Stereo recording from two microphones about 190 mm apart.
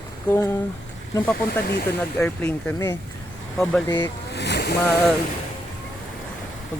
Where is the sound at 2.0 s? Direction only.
5° left (ahead or behind).